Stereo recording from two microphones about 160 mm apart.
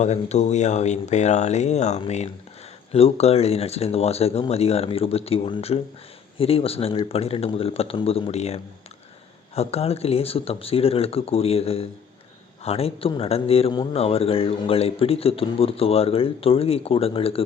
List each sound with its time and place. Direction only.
0.0 s speech: 45° left (ahead or behind)